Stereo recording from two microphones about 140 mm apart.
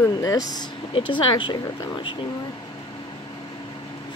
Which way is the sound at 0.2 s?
25° left (ahead or behind).